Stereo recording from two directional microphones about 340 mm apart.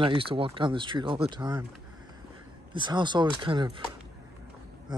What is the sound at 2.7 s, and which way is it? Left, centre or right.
Speech, centre.